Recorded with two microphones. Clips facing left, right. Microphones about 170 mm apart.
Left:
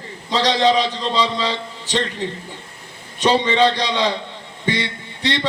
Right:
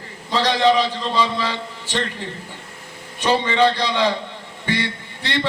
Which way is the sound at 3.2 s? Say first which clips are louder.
Left 1 dB; 20° left (ahead or behind).